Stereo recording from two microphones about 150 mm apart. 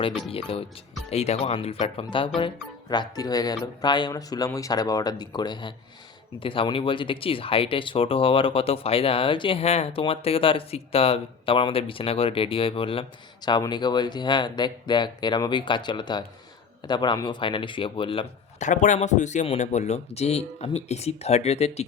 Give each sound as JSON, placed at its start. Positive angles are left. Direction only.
{"t": 0.0, "sound": "speech", "side_deg": 35}
{"t": 18.6, "sound": "speech", "side_deg": 55}